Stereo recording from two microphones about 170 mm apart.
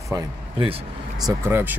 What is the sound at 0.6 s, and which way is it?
Speech, 35° right (ahead or behind).